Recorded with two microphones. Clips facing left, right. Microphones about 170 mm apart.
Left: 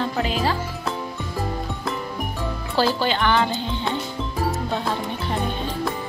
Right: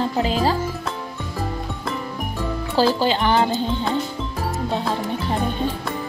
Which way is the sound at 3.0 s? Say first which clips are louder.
Right 2 dB; 35° right (ahead or behind).